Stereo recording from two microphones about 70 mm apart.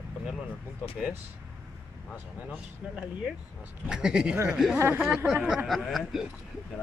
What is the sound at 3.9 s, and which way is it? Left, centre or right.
Speech, centre.